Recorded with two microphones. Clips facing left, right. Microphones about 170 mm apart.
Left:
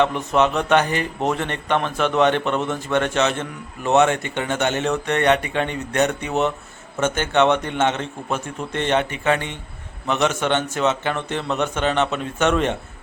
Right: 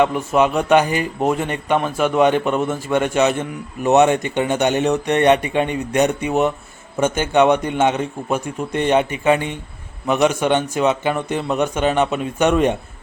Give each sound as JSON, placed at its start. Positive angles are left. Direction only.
{"t": 0.0, "sound": "speech", "side_deg": -10}